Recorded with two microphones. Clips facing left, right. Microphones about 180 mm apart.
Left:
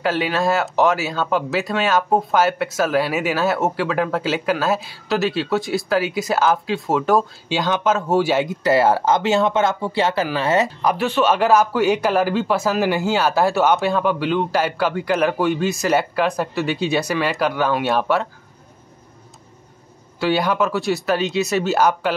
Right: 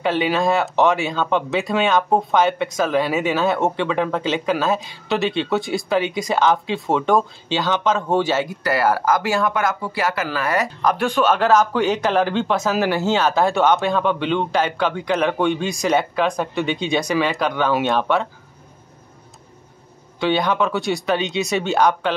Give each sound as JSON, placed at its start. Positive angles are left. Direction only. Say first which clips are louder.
{"t": 0.0, "sound": "speech", "louder": "right 1 dB", "side_deg": 0}
{"t": 10.8, "sound": "speech", "louder": "even", "side_deg": 5}
{"t": 20.2, "sound": "speech", "louder": "even", "side_deg": 5}